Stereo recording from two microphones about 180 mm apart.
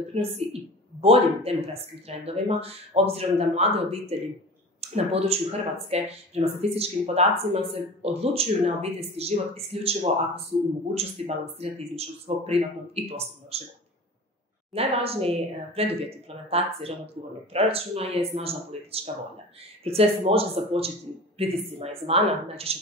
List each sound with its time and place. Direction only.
0.1 s speech: 35° right (ahead or behind)
14.7 s speech: 35° right (ahead or behind)